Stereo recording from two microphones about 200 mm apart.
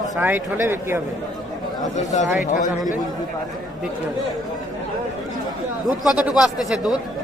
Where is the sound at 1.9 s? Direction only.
35° left (ahead or behind).